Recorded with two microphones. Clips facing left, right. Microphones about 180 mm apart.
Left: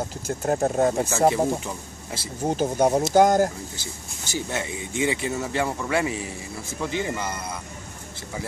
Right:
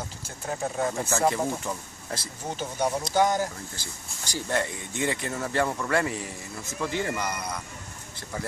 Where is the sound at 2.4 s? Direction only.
45° left (ahead or behind).